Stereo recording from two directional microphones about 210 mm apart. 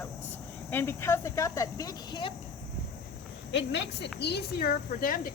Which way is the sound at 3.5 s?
60° left (ahead or behind).